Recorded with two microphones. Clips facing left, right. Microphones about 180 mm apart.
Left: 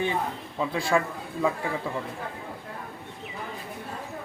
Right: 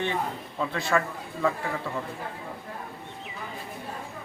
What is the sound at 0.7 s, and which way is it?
Speech, 10° left (ahead or behind).